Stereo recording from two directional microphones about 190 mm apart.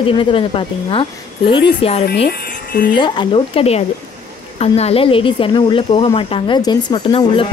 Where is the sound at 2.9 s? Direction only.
25° left (ahead or behind).